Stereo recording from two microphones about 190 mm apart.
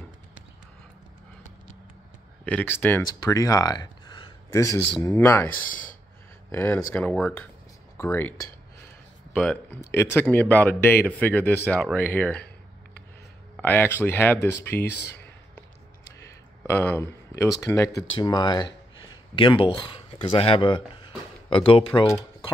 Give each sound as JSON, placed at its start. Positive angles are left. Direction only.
{"t": 2.4, "sound": "speech", "side_deg": 10}
{"t": 5.7, "sound": "speech", "side_deg": 45}
{"t": 6.5, "sound": "a man's voice", "side_deg": 15}
{"t": 7.2, "sound": "speech", "side_deg": 0}
{"t": 8.0, "sound": "a man's voice", "side_deg": 10}
{"t": 13.6, "sound": "a man's voice", "side_deg": 10}
{"t": 16.2, "sound": "speech", "side_deg": 10}
{"t": 22.0, "sound": "speech", "side_deg": 15}